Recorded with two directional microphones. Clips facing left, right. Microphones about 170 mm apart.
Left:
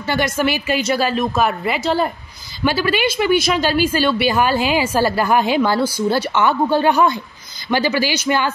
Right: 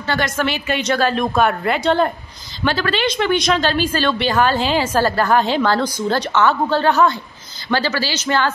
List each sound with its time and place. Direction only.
0.0 s a woman's voice: 10° left (ahead or behind)